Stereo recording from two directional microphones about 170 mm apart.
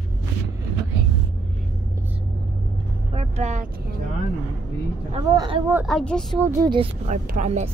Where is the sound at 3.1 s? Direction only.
35° right (ahead or behind).